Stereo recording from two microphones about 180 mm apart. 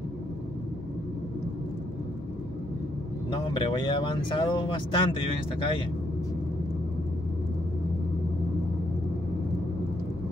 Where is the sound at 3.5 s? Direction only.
25° left (ahead or behind).